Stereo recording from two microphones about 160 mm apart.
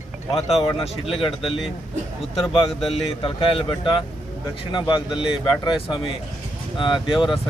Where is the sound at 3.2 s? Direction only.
30° left (ahead or behind).